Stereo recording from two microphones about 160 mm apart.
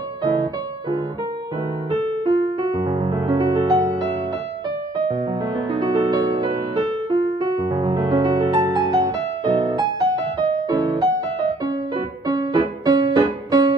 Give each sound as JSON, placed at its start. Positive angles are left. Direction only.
{"t": 2.2, "sound": "music", "side_deg": -25}
{"t": 5.7, "sound": "music", "side_deg": -25}
{"t": 12.3, "sound": "music", "side_deg": -25}